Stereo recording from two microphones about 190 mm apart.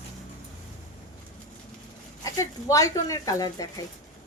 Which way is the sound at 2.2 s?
15° left (ahead or behind).